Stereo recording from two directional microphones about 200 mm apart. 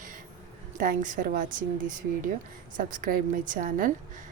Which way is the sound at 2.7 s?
45° right (ahead or behind).